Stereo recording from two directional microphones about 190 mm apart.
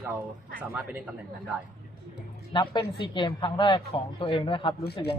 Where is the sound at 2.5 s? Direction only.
25° left (ahead or behind).